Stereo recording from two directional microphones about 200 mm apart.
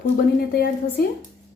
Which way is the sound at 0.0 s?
50° left (ahead or behind).